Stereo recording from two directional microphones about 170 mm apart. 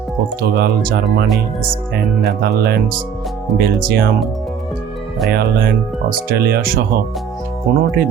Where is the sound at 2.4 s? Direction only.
70° right (ahead or behind).